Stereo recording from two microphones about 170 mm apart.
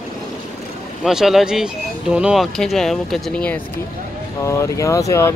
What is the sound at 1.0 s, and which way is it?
Speech, centre (ahead or behind).